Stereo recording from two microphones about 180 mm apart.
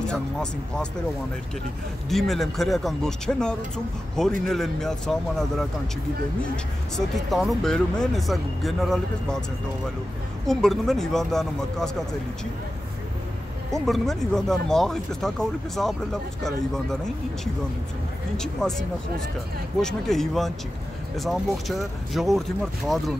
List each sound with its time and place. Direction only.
0.1 s speech: 5° left (ahead or behind)
2.0 s speech: centre (ahead or behind)
7.2 s speech: centre (ahead or behind)
10.4 s speech: centre (ahead or behind)
13.8 s speech: centre (ahead or behind)
18.4 s speech: 5° left (ahead or behind)